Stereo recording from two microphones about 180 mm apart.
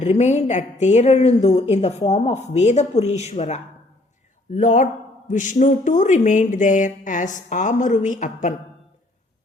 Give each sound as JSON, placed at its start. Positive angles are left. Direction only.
{"t": 0.0, "sound": "a woman's voice", "side_deg": 40}